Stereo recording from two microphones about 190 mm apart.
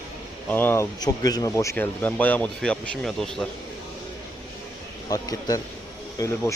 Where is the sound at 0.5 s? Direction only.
10° left (ahead or behind).